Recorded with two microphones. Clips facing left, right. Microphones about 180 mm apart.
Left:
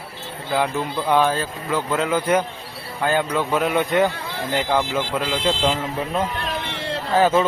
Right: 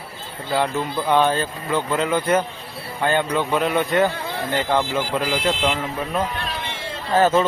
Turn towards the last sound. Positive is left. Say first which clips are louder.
# even
turn(degrees=10)  # may be behind; listen again after turning